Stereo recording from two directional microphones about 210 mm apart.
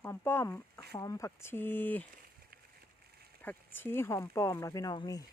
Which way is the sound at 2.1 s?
45° right (ahead or behind).